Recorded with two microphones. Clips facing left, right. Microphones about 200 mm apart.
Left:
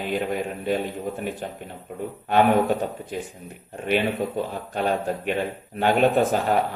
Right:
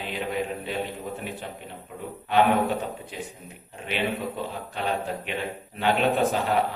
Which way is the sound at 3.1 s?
45° left (ahead or behind).